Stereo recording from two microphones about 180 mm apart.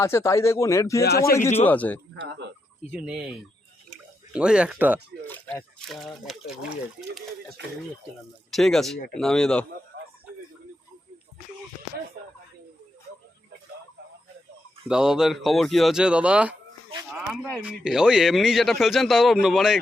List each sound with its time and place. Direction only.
0.0 s speech: 15° left (ahead or behind)
2.1 s speech: 75° right (ahead or behind)
2.9 s speech: 5° right (ahead or behind)
5.2 s speech: 10° left (ahead or behind)
8.4 s speech: centre (ahead or behind)
14.8 s speech: 5° right (ahead or behind)